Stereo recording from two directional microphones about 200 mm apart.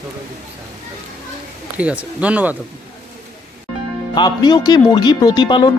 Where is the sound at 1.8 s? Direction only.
5° right (ahead or behind).